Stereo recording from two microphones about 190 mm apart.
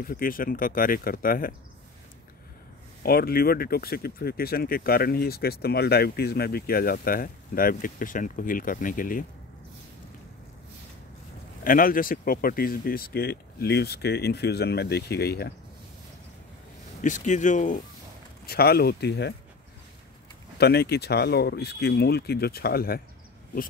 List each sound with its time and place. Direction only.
0.0 s speech: 50° left (ahead or behind)
3.0 s speech: 50° left (ahead or behind)
11.6 s speech: 45° left (ahead or behind)
17.0 s speech: 40° left (ahead or behind)
18.4 s speech: 55° left (ahead or behind)
20.5 s speech: 60° left (ahead or behind)